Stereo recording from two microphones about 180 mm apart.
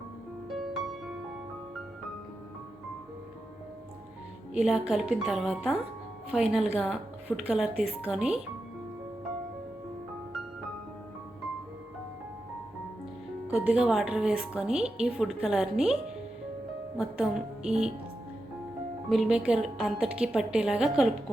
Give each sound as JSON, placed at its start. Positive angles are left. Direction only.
{"t": 0.5, "sound": "music", "side_deg": 0}
{"t": 4.5, "sound": "a woman's voice", "side_deg": -5}
{"t": 13.5, "sound": "a woman's voice", "side_deg": -5}
{"t": 17.0, "sound": "a woman's voice", "side_deg": -5}
{"t": 19.0, "sound": "a woman's voice", "side_deg": 0}